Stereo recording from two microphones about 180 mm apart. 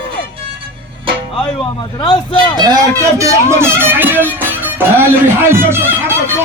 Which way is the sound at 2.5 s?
20° right (ahead or behind).